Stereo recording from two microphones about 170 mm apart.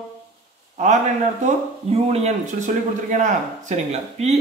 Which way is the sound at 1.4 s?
40° right (ahead or behind).